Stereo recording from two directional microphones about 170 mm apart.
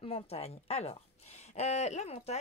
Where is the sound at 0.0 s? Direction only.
35° left (ahead or behind).